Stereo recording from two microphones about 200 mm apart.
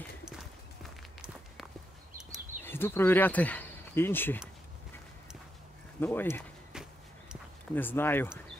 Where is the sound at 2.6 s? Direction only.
10° left (ahead or behind).